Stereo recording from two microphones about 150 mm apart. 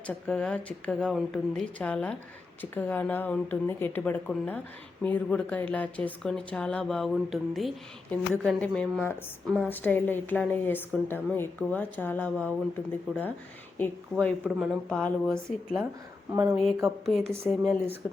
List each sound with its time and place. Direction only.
0.1 s a woman's voice: 5° left (ahead or behind)
16.3 s speech: 20° right (ahead or behind)
16.8 s speech: centre (ahead or behind)